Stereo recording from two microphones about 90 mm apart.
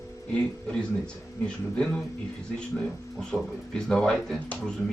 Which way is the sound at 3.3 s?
5° left (ahead or behind).